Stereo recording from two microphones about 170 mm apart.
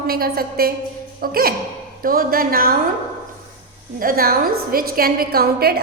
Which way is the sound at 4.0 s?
60° right (ahead or behind).